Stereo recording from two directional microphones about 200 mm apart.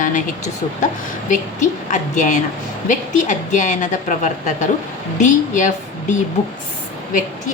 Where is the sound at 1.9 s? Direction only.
40° left (ahead or behind).